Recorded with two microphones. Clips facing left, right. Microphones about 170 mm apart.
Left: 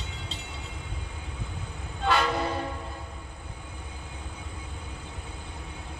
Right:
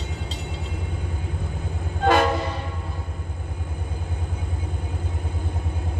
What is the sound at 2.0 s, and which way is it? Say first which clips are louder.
Train: right 7 dB; 50° right (ahead or behind).